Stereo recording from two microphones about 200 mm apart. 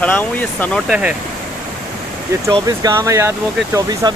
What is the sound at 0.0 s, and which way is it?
Speech, 10° left (ahead or behind).